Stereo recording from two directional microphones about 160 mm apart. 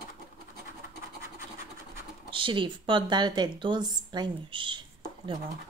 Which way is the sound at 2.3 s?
30° right (ahead or behind).